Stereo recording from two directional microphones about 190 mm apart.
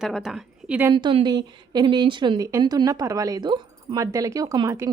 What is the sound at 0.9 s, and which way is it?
A woman's voice, 25° right (ahead or behind).